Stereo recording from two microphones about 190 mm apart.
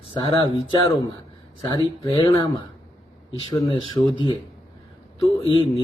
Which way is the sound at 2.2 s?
25° left (ahead or behind).